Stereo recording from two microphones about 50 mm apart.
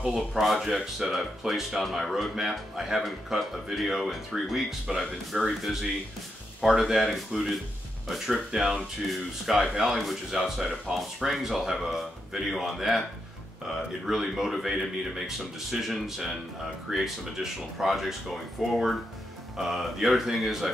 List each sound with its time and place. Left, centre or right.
0.0 s speech: centre
0.4 s speech: centre